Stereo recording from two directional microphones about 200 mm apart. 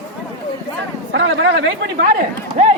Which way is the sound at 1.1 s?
65° right (ahead or behind).